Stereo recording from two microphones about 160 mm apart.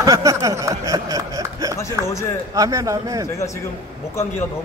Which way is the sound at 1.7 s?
20° left (ahead or behind).